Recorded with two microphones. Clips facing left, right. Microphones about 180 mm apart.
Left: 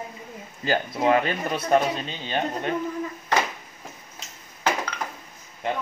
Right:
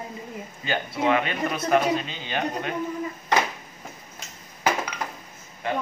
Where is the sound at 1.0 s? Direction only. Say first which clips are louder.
Left 2 dB; 35° left (ahead or behind).